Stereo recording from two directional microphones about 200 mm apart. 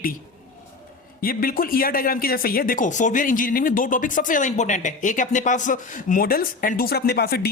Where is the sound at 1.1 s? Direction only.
45° left (ahead or behind).